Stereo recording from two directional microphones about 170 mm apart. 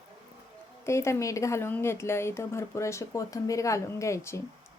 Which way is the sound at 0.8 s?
15° left (ahead or behind).